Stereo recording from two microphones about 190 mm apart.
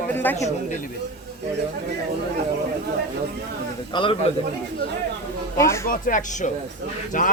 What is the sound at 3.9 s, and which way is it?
Speech, 25° left (ahead or behind).